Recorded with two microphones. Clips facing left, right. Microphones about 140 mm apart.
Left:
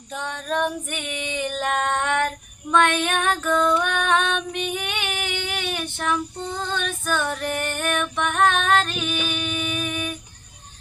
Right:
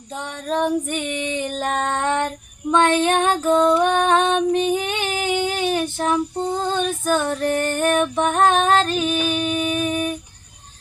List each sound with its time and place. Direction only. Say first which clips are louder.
0.4 s female singing: right 5 dB; 30° right (ahead or behind)